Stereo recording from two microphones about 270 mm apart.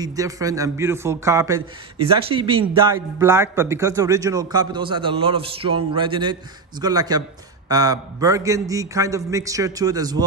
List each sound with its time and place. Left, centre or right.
0.0 s speech: centre